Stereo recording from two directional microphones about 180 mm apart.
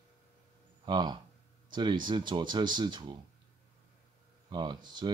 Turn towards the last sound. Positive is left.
turn(degrees=-25)  # may be behind; listen again after turning